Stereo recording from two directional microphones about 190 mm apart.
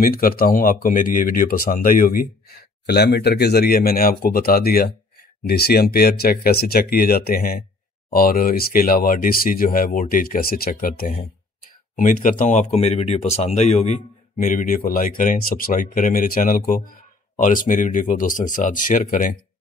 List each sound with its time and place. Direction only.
0.0 s speech: 50° left (ahead or behind)